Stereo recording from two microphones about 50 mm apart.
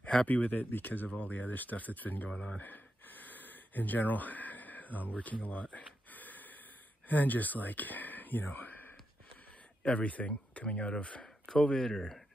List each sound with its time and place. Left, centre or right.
0.3 s speech: left
2.2 s speech: centre
2.6 s a sound: left
7.1 s speech: left
9.8 s speech: left; by 12.2 s centre